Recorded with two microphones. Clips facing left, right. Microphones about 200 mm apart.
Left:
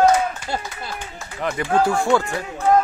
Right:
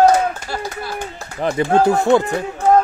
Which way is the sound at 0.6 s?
40° right (ahead or behind).